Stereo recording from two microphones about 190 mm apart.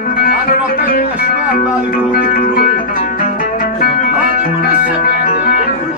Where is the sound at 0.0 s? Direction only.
50° left (ahead or behind).